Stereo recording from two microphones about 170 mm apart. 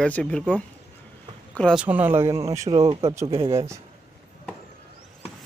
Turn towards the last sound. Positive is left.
turn(degrees=-35)  # may be behind; listen again after turning